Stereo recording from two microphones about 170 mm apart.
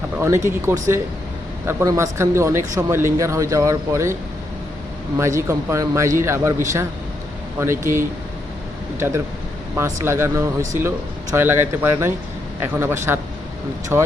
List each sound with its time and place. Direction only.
0.4 s speech: 15° right (ahead or behind)
7.6 s speech: 15° right (ahead or behind)